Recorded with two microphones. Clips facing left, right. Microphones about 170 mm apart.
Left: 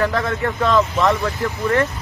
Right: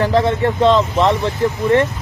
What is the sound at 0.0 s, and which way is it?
Speech, 25° right (ahead or behind).